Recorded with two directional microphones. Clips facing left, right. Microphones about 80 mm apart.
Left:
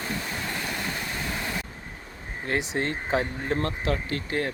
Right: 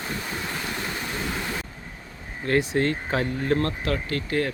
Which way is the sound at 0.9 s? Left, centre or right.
Centre.